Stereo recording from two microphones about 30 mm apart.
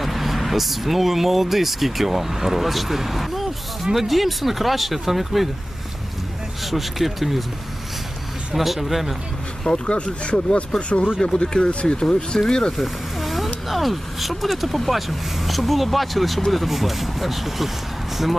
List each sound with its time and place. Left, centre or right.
0.0 s vehicle: centre
0.5 s speech: centre
6.7 s speech: centre
8.5 s speech: centre
9.6 s speech: left
11.2 s speech: left
12.7 s speech: centre